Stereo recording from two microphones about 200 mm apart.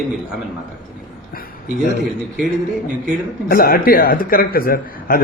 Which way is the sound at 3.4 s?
45° left (ahead or behind).